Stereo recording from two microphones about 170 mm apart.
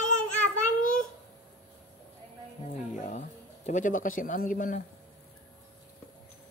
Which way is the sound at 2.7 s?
50° left (ahead or behind).